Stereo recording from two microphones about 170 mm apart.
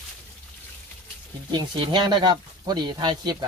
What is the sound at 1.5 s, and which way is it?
Speech, 25° right (ahead or behind).